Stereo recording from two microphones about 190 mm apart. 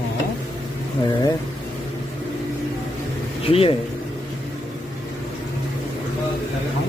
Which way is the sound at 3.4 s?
30° left (ahead or behind).